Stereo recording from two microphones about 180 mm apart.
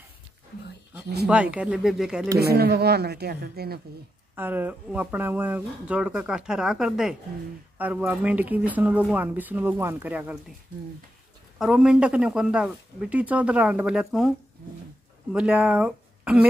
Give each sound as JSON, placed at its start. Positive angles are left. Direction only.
{"t": 1.2, "sound": "speech", "side_deg": -5}
{"t": 2.3, "sound": "a woman's voice", "side_deg": -60}
{"t": 4.4, "sound": "speech", "side_deg": -10}
{"t": 11.5, "sound": "speech", "side_deg": -5}
{"t": 15.3, "sound": "speech", "side_deg": -5}